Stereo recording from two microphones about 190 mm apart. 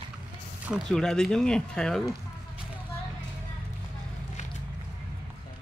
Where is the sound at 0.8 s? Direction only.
5° left (ahead or behind).